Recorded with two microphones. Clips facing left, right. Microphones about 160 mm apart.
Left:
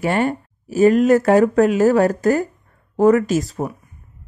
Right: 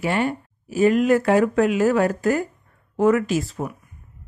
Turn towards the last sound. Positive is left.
turn(degrees=40)  # may be behind; listen again after turning